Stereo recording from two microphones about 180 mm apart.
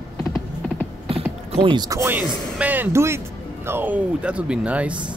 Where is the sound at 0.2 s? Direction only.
15° left (ahead or behind).